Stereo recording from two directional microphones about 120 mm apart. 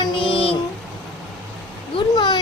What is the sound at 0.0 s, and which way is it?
Child singing, 45° left (ahead or behind).